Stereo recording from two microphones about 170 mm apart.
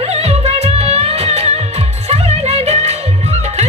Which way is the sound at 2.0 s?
40° right (ahead or behind).